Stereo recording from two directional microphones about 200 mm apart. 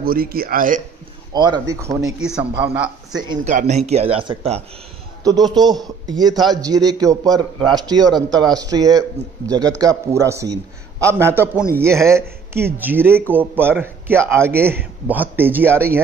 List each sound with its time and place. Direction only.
0.0 s speech: 45° right (ahead or behind)
1.3 s a man's voice: 20° right (ahead or behind)
2.1 s a man's voice: 5° right (ahead or behind)
3.4 s speech: 35° right (ahead or behind)
5.2 s a man's voice: 20° right (ahead or behind)